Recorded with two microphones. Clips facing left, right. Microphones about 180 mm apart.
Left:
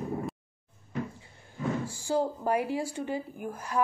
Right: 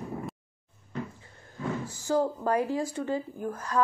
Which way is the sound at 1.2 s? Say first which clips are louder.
Left 2 dB; 15° left (ahead or behind).